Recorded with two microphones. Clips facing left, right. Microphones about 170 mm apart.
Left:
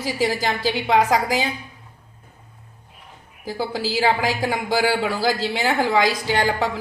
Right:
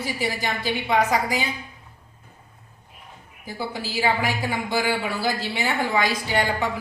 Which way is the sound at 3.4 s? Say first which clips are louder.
Left 5 dB; 90° left.